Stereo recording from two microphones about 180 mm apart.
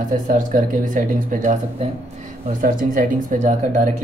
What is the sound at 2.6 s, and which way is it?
Speech, 50° right (ahead or behind).